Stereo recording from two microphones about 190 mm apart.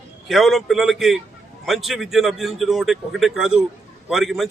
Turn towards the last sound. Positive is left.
turn(degrees=0)  # may be behind; listen again after turning